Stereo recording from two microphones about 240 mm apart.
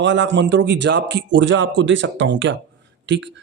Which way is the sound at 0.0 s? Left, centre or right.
Right.